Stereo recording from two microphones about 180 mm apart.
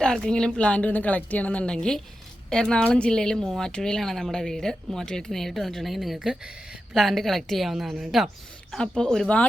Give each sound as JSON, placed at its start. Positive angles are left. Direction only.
{"t": 0.0, "sound": "speech", "side_deg": 5}